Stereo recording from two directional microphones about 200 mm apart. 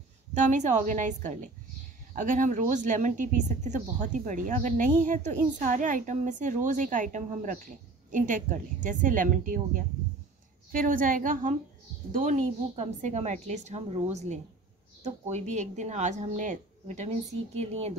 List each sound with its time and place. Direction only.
0.3 s a woman's voice: 35° right (ahead or behind)